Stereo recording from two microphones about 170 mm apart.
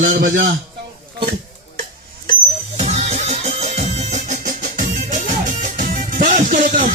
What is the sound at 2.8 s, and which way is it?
Music, 40° right (ahead or behind).